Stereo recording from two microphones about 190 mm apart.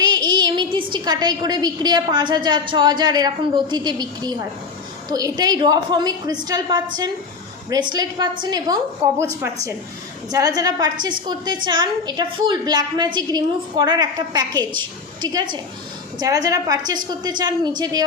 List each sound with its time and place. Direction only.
0.0 s a woman's voice: 20° right (ahead or behind)
10.2 s a woman's voice: 20° right (ahead or behind)